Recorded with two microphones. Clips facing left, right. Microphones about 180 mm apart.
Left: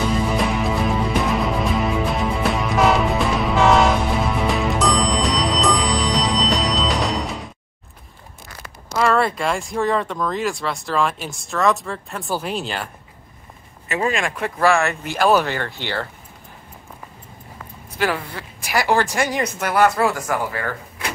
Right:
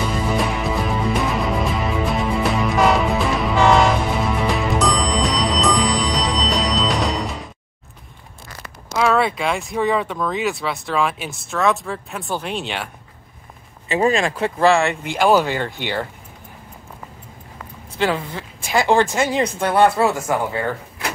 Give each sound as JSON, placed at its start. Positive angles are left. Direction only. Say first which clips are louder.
{"t": 0.3, "sound": "music", "louder": "even", "side_deg": 0}
{"t": 8.9, "sound": "speech", "louder": "right 1 dB", "side_deg": 0}
{"t": 13.8, "sound": "speech", "louder": "right 4 dB", "side_deg": -30}
{"t": 17.9, "sound": "speech", "louder": "right 2 dB", "side_deg": -20}